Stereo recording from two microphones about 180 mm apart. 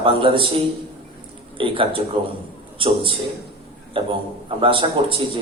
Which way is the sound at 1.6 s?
30° right (ahead or behind).